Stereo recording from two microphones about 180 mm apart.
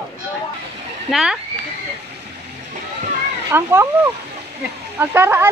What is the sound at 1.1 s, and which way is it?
Speech, 5° right (ahead or behind).